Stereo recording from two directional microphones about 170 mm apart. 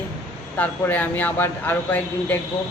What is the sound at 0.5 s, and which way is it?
Speech, 10° left (ahead or behind).